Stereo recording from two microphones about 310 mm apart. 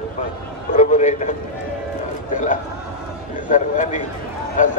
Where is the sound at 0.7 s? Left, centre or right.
Left.